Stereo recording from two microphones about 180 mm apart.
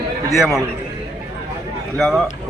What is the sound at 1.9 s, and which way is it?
Speech, centre (ahead or behind).